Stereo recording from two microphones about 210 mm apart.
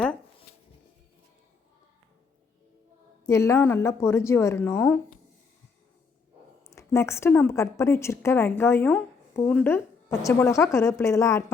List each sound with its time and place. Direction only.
3.2 s a woman's voice: 15° left (ahead or behind)
6.7 s a woman's voice: 15° left (ahead or behind)